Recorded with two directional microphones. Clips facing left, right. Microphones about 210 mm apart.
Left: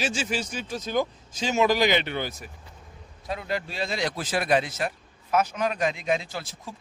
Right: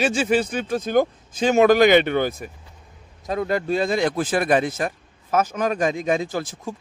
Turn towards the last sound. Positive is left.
turn(degrees=-45)  # may be behind; listen again after turning